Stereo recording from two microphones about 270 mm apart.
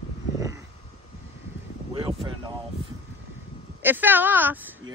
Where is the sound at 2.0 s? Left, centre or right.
Centre.